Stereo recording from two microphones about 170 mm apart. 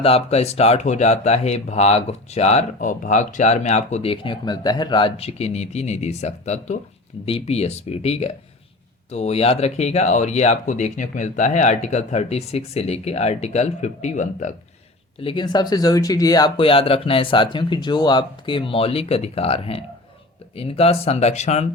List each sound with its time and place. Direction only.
0.0 s speech: 35° left (ahead or behind)
15.2 s speech: 30° left (ahead or behind)